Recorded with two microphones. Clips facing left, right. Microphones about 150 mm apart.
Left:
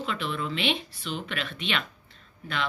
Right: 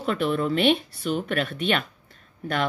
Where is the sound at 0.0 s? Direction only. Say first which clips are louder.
Right 7 dB; 45° right (ahead or behind).